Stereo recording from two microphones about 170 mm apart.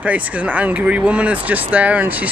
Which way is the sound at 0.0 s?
10° right (ahead or behind).